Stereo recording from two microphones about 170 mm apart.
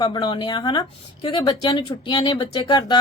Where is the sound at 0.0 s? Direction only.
25° left (ahead or behind).